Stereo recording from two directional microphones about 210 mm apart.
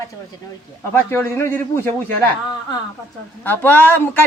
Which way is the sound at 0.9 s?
10° left (ahead or behind).